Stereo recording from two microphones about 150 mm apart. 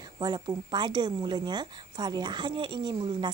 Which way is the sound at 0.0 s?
25° right (ahead or behind).